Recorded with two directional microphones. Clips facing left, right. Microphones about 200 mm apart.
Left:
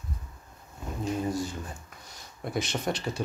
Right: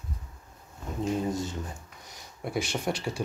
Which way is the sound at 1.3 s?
20° right (ahead or behind).